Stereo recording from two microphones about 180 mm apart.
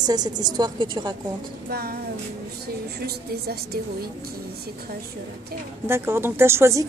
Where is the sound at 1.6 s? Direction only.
60° right (ahead or behind).